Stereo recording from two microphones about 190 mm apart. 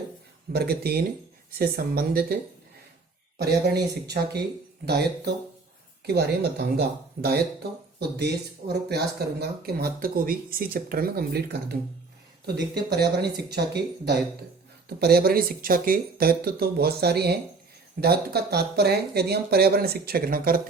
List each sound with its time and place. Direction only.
0.5 s speech: 55° right (ahead or behind)